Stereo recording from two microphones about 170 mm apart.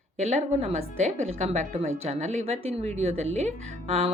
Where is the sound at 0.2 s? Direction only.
40° right (ahead or behind).